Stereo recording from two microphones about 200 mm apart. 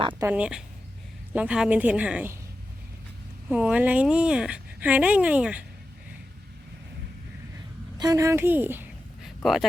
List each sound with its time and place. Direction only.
0.1 s speech: 10° right (ahead or behind)
3.5 s speech: 5° right (ahead or behind)
7.9 s a woman's voice: 15° right (ahead or behind); by 9.6 s centre (ahead or behind)